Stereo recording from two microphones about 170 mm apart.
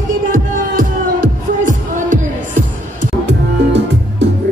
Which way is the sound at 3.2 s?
90° right.